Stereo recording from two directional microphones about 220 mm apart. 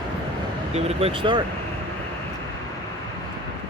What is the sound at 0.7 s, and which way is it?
Speech, 30° right (ahead or behind).